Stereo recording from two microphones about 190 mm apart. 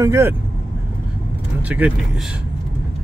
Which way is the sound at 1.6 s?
10° right (ahead or behind).